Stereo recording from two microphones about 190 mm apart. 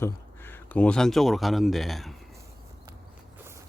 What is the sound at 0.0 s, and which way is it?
Speech, 10° left (ahead or behind).